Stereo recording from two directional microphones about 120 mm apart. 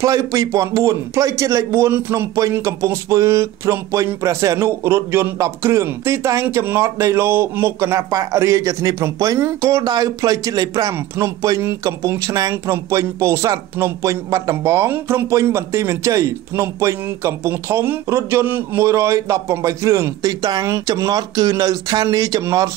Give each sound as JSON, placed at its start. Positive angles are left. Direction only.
{"t": 0.0, "sound": "speech", "side_deg": -25}